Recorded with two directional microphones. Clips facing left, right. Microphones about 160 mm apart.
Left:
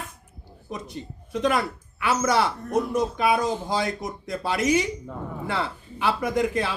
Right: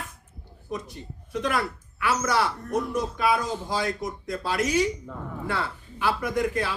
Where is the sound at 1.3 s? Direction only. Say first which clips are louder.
Left 3 dB; 20° left (ahead or behind).